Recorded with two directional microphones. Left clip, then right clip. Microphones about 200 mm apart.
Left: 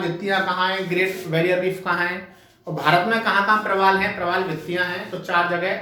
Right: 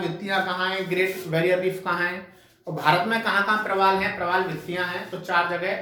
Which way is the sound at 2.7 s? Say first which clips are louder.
Left 3 dB; 10° right (ahead or behind).